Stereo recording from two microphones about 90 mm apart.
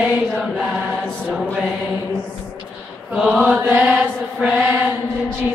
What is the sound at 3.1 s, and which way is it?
Chant, 5° right (ahead or behind).